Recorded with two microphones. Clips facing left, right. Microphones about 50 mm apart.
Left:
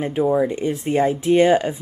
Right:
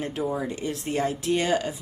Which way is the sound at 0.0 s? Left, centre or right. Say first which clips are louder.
Left 9 dB; left.